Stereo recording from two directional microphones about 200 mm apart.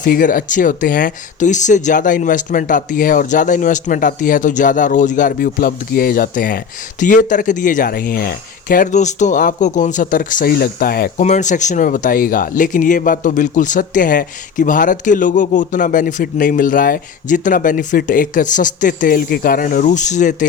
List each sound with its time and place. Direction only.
0.0 s speech: 45° left (ahead or behind)
11.2 s speech: 35° left (ahead or behind)